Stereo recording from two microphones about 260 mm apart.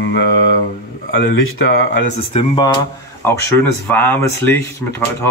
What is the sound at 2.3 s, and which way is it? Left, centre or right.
Speech, centre.